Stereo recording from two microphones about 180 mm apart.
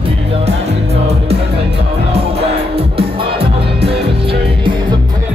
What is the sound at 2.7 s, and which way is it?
Music, 30° right (ahead or behind).